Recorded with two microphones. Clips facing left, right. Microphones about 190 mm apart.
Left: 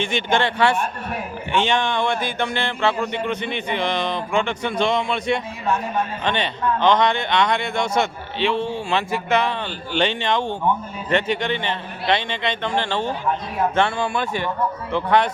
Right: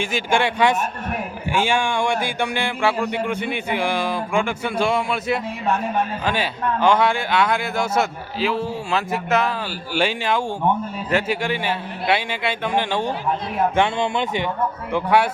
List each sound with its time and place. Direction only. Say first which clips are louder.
0.0 s speech: even; 10° right (ahead or behind)